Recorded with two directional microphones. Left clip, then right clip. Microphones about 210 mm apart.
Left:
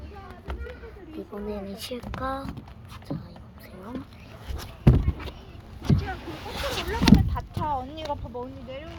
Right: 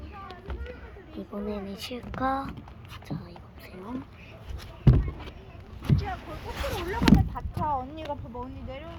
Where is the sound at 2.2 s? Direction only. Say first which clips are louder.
Right 4 dB; 25° right (ahead or behind).